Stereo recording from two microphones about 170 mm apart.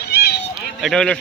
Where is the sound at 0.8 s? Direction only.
5° left (ahead or behind).